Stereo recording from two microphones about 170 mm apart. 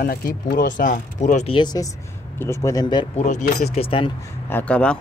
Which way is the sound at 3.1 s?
45° left (ahead or behind).